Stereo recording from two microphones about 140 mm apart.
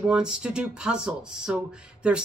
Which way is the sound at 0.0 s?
5° right (ahead or behind).